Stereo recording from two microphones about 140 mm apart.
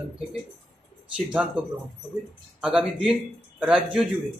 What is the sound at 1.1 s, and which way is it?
A man's voice, 10° right (ahead or behind).